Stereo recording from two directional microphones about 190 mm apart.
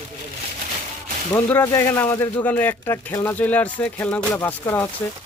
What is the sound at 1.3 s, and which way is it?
Speech, 10° left (ahead or behind).